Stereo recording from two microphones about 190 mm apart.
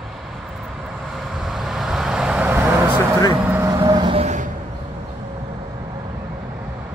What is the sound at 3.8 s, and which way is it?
Vehicle, 25° right (ahead or behind).